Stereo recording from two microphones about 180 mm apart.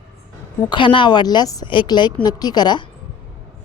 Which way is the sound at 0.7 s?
25° left (ahead or behind).